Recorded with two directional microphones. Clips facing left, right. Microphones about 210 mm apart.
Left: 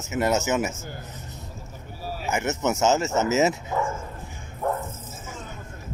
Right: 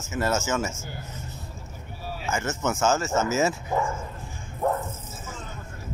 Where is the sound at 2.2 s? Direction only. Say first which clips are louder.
Left 3 dB; 20° left (ahead or behind).